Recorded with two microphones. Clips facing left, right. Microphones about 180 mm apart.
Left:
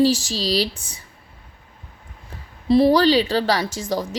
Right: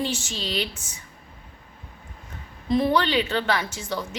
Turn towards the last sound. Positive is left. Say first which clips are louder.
# left 5 dB
turn(degrees=40)  # may be behind; listen again after turning